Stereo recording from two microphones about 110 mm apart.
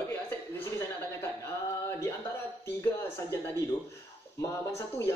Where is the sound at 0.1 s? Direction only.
20° left (ahead or behind).